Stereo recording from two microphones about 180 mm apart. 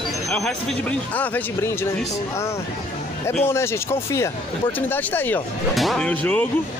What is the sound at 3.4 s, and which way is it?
Speech, 15° left (ahead or behind).